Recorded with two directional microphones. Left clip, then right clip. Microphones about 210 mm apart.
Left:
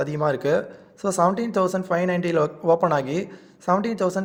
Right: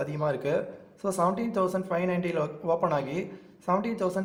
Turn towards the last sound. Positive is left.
turn(degrees=30)  # may be behind; listen again after turning